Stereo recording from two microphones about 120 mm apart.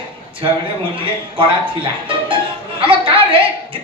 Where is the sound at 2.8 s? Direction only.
45° right (ahead or behind).